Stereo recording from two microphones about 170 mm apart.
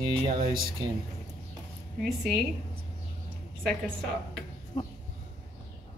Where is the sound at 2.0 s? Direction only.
Centre (ahead or behind).